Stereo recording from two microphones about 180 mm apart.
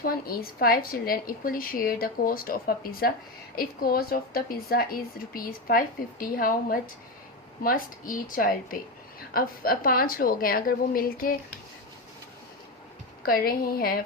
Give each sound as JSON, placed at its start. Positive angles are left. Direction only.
{"t": 0.0, "sound": "a woman's voice", "side_deg": 55}
{"t": 13.2, "sound": "a woman's voice", "side_deg": 55}